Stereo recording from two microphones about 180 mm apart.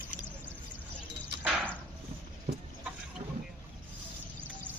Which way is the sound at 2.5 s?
60° right (ahead or behind).